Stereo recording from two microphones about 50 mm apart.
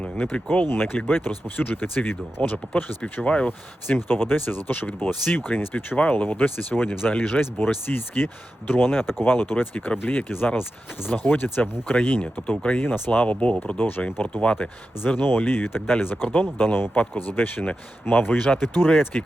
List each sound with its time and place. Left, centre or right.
0.2 s speech: left
0.7 s speech: left
3.2 s speech: left
3.8 s speech: left
13.7 s speech: left
14.3 s speech: left
15.0 s speech: left